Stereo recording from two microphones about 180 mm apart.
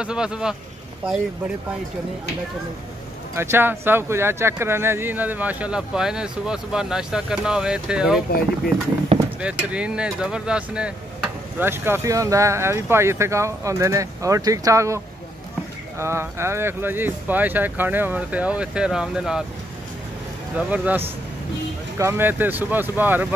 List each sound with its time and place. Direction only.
0.0 s speech: 5° right (ahead or behind)
3.3 s speech: 15° right (ahead or behind)
9.4 s speech: 5° right (ahead or behind)
16.0 s speech: 15° right (ahead or behind)
20.5 s speech: 10° right (ahead or behind)